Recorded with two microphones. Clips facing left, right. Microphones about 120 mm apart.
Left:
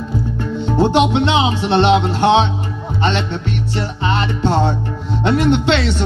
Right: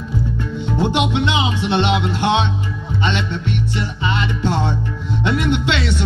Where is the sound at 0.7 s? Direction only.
30° left (ahead or behind).